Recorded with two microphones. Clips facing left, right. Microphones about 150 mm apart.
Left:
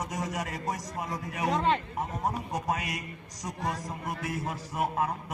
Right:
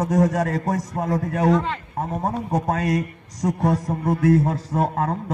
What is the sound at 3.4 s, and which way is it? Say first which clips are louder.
Speech: right 12 dB; 55° right (ahead or behind).